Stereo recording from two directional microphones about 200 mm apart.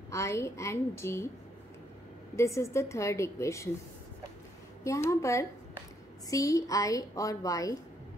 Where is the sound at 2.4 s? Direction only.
15° left (ahead or behind).